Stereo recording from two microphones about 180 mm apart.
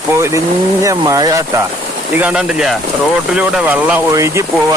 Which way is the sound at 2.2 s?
5° right (ahead or behind).